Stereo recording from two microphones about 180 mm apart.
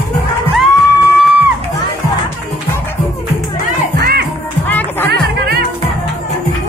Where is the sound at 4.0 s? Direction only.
60° right (ahead or behind).